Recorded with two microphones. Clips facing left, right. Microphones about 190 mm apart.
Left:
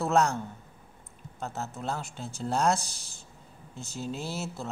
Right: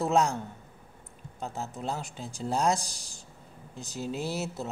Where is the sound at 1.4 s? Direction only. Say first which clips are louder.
Even; 15° right (ahead or behind).